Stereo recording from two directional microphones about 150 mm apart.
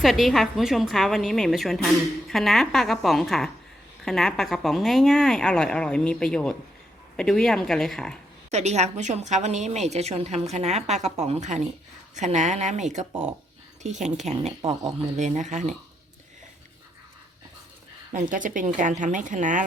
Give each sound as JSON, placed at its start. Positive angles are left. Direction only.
{"t": 0.0, "sound": "a woman's voice", "side_deg": 0}
{"t": 8.4, "sound": "a woman's voice", "side_deg": -50}
{"t": 18.1, "sound": "a woman's voice", "side_deg": -60}